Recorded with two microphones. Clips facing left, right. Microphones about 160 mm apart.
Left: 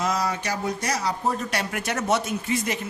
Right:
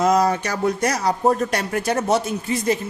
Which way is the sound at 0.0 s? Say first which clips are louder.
Right 8 dB; 50° right (ahead or behind).